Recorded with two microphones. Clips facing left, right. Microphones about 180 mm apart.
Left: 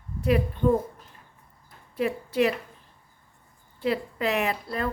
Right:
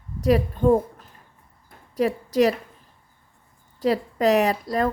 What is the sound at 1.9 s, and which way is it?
Speech, 40° right (ahead or behind).